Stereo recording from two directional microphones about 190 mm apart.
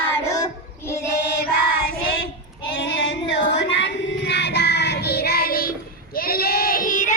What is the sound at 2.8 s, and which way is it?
Music, 70° left (ahead or behind).